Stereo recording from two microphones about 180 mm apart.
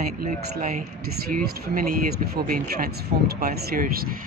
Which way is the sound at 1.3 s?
50° right (ahead or behind).